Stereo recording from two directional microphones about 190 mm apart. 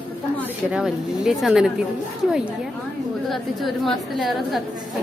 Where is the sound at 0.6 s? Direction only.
5° right (ahead or behind).